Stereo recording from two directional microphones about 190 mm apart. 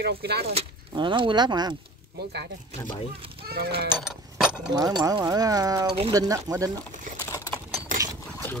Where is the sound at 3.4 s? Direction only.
55° right (ahead or behind).